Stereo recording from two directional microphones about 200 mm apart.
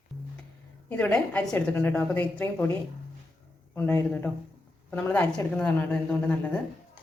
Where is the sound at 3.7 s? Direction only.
10° left (ahead or behind).